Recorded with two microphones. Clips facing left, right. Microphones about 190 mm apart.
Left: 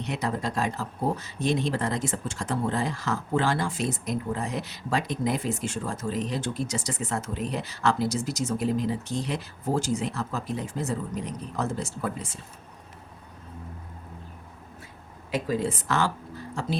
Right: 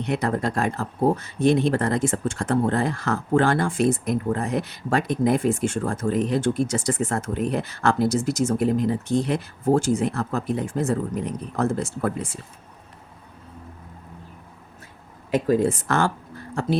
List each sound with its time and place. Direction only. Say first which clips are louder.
0.0 s speech: right 6 dB; 55° right (ahead or behind)
15.3 s speech: right 7 dB; 50° right (ahead or behind)